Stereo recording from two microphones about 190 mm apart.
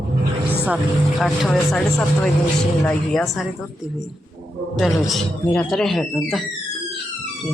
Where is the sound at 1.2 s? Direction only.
Centre (ahead or behind).